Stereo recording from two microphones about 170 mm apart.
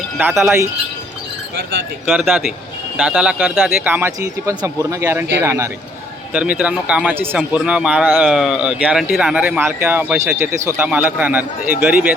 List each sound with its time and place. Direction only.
0.2 s speech: 10° right (ahead or behind)
2.0 s speech: centre (ahead or behind)